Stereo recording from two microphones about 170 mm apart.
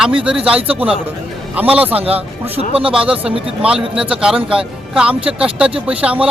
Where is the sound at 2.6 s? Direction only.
35° right (ahead or behind).